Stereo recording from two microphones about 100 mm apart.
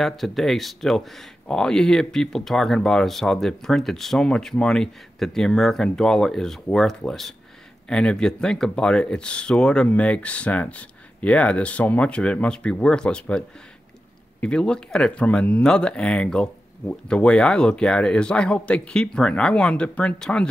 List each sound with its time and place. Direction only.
0.0 s speech: centre (ahead or behind)
14.4 s speech: 10° left (ahead or behind)